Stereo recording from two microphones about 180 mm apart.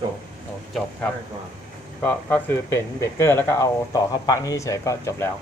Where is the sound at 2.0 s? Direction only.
10° left (ahead or behind).